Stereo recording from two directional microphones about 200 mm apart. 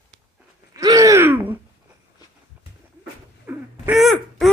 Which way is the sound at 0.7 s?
15° right (ahead or behind).